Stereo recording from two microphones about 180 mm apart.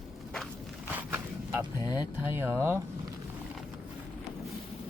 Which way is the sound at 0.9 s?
10° right (ahead or behind).